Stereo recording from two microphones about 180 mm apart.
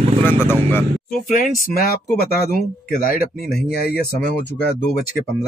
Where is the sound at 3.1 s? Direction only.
55° left (ahead or behind).